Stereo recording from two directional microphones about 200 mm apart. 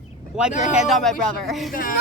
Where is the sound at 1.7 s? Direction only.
45° left (ahead or behind).